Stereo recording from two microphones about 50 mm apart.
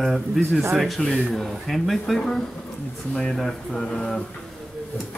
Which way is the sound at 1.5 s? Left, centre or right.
Centre.